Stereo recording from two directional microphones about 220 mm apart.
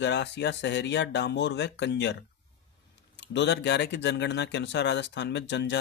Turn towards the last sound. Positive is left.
turn(degrees=50)  # may be behind; listen again after turning